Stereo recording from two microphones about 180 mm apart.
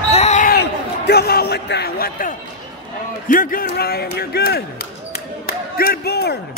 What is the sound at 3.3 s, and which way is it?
A man's voice, 50° left (ahead or behind).